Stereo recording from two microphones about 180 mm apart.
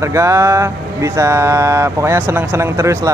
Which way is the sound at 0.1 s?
15° right (ahead or behind).